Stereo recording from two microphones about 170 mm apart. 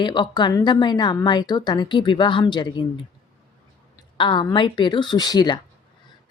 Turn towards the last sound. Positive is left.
turn(degrees=25)  # may be behind; listen again after turning